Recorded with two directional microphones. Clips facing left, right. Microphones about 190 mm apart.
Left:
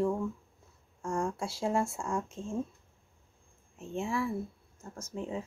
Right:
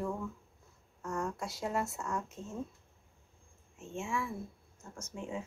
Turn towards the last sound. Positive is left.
turn(degrees=35)  # may be behind; listen again after turning